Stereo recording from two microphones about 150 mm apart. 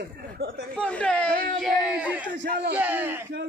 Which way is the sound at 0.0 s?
85° right.